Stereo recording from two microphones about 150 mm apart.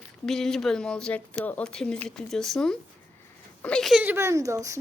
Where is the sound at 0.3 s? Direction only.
5° left (ahead or behind).